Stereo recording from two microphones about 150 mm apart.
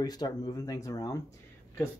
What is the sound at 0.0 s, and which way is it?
Speech, 25° left (ahead or behind).